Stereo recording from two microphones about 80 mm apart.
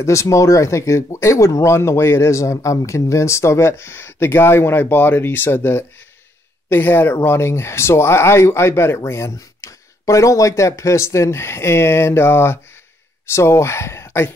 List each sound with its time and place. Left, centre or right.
0.0 s speech: left